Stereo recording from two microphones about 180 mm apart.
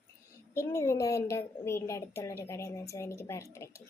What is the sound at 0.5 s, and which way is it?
A woman's voice, 15° left (ahead or behind).